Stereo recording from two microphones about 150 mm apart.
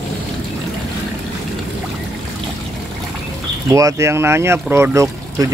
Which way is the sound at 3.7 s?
20° right (ahead or behind).